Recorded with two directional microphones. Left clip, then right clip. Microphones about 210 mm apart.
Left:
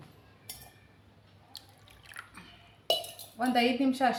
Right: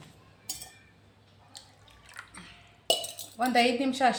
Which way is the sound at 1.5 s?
5° left (ahead or behind).